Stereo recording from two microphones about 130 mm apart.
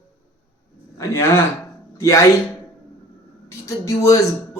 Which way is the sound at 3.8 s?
25° left (ahead or behind).